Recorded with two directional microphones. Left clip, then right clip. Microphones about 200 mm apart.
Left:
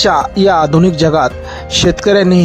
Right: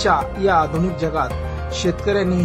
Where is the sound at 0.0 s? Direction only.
40° left (ahead or behind).